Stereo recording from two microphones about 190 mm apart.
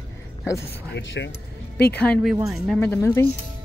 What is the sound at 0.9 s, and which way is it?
Speech, 70° left (ahead or behind).